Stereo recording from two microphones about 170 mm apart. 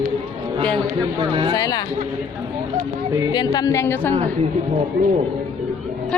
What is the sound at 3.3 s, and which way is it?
Speech, 25° left (ahead or behind).